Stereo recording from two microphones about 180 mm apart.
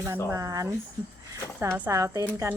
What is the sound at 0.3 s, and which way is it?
Speech, 15° right (ahead or behind).